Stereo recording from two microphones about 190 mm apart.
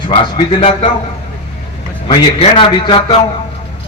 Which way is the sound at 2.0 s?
30° left (ahead or behind).